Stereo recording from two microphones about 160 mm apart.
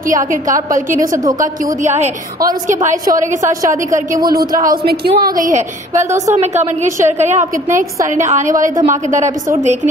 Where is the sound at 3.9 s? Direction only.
60° right (ahead or behind).